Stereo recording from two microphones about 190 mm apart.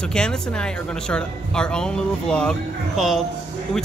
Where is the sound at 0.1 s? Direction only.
5° left (ahead or behind).